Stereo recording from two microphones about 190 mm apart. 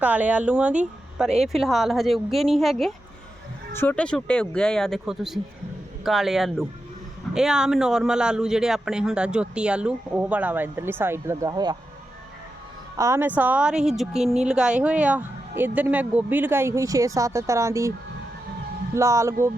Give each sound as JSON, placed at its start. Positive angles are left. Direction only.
{"t": 0.0, "sound": "a man's voice", "side_deg": -5}
{"t": 13.0, "sound": "a woman's voice", "side_deg": -15}
{"t": 18.9, "sound": "a woman's voice", "side_deg": -15}